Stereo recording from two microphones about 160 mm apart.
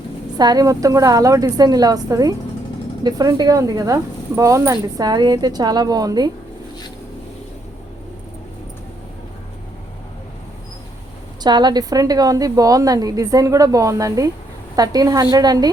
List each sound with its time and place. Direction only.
0.3 s speech: 25° right (ahead or behind)
11.4 s speech: 25° right (ahead or behind)